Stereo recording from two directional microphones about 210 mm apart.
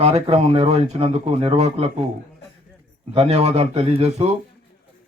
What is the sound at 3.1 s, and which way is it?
A man's voice, 30° right (ahead or behind).